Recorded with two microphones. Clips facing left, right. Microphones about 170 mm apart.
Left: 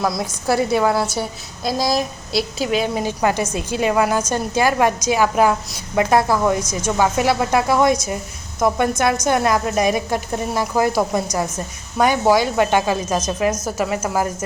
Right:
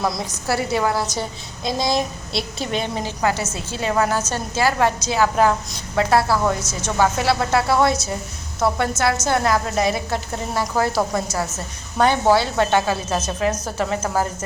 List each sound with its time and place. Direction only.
0.0 s a woman's voice: centre (ahead or behind)
0.4 s a woman's voice: 15° left (ahead or behind)